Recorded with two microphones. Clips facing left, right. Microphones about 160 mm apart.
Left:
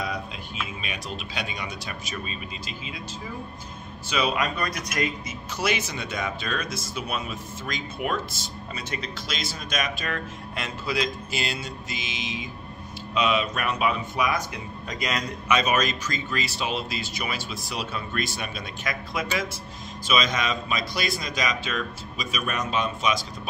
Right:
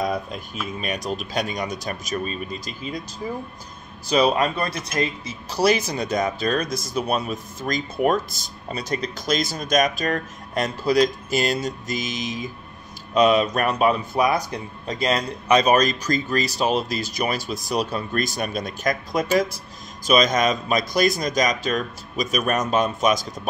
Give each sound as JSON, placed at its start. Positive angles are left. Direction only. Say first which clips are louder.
{"t": 0.0, "sound": "a sound", "louder": "right 7 dB", "side_deg": -45}
{"t": 0.7, "sound": "speech", "louder": "right 8 dB", "side_deg": -45}
{"t": 4.1, "sound": "a man's voice", "louder": "right 7 dB", "side_deg": -40}